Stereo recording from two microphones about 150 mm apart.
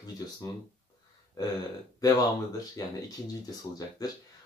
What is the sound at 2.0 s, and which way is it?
Speech, 25° left (ahead or behind).